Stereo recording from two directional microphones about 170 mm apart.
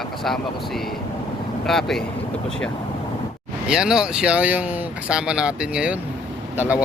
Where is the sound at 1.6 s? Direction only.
Centre (ahead or behind).